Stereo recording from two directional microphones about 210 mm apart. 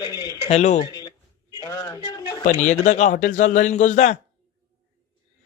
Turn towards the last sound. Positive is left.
turn(degrees=35)  # may be behind; listen again after turning